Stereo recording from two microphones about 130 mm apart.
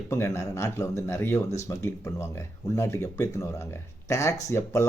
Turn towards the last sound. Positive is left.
turn(degrees=20)  # may be behind; listen again after turning